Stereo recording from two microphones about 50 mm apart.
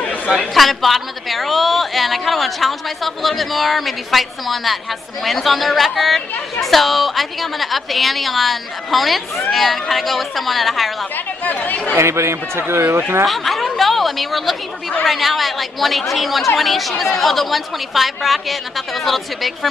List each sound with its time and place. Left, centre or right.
0.3 s a woman's voice: centre
11.4 s speech: left
12.0 s speech: right
13.3 s a woman's voice: centre